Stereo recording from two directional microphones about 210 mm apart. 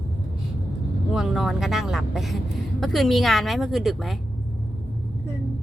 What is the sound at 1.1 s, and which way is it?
A woman's voice, centre (ahead or behind).